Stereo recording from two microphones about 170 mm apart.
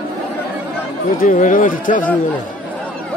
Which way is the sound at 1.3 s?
50° left (ahead or behind).